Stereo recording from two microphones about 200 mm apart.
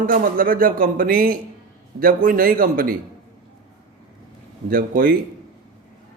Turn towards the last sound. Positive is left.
turn(degrees=-45)  # may be behind; listen again after turning